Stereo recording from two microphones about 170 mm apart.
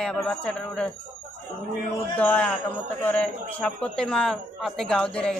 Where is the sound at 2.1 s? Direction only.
10° left (ahead or behind).